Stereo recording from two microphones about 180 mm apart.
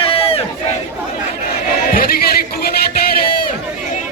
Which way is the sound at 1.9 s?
55° left (ahead or behind).